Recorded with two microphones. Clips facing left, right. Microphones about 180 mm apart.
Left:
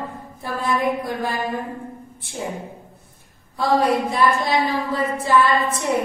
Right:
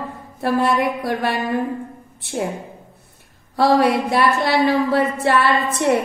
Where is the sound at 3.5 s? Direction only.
70° right (ahead or behind).